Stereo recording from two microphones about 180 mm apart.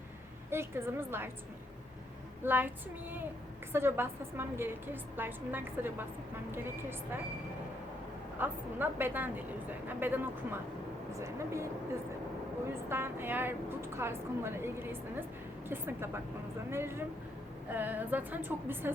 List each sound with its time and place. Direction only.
0.5 s a woman's voice: 15° right (ahead or behind)
2.4 s a woman's voice: 10° right (ahead or behind)
8.4 s a woman's voice: 10° right (ahead or behind)
12.9 s a woman's voice: 10° right (ahead or behind)